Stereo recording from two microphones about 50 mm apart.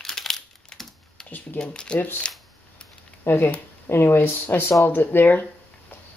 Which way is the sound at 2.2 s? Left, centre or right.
Centre.